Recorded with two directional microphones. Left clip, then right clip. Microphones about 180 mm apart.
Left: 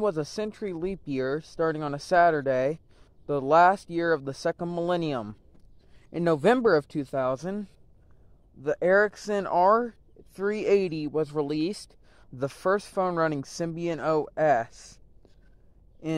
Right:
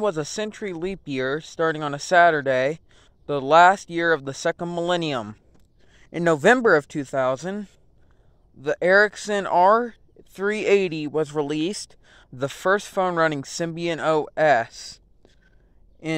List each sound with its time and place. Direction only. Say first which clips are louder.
0.0 s speech: right 3 dB; 25° right (ahead or behind)